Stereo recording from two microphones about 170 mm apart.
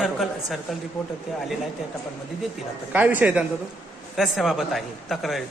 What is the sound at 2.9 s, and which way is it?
Speech, 10° right (ahead or behind).